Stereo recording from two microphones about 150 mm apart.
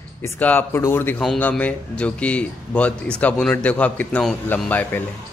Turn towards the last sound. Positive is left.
turn(degrees=10)  # may be behind; listen again after turning